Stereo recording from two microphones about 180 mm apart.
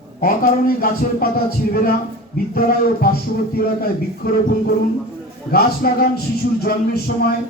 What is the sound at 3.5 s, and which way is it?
A man's voice, 55° left (ahead or behind).